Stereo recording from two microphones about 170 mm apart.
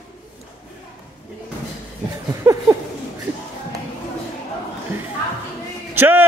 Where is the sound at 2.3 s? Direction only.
20° right (ahead or behind).